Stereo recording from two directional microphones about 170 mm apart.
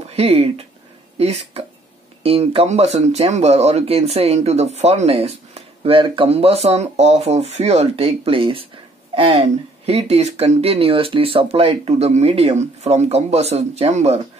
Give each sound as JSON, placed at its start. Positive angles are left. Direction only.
{"t": 0.1, "sound": "speech", "side_deg": -35}